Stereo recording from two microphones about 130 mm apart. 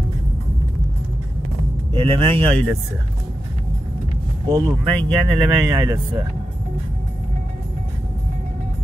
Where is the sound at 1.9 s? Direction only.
45° right (ahead or behind).